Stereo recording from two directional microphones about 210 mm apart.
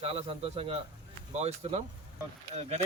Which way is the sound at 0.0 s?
30° right (ahead or behind).